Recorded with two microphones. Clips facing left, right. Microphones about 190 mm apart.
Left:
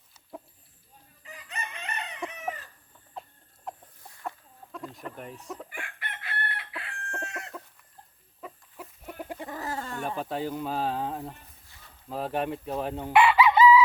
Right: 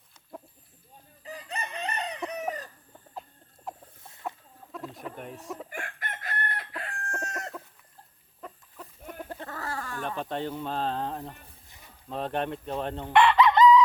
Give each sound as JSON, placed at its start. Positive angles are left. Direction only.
{"t": 1.2, "sound": "chicken", "side_deg": -35}
{"t": 3.7, "sound": "chicken", "side_deg": 0}
{"t": 4.7, "sound": "speech", "side_deg": 0}
{"t": 5.7, "sound": "chicken", "side_deg": -45}
{"t": 8.4, "sound": "chicken", "side_deg": 5}
{"t": 9.3, "sound": "a sound", "side_deg": 15}
{"t": 10.0, "sound": "speech", "side_deg": 5}
{"t": 12.0, "sound": "chicken", "side_deg": 5}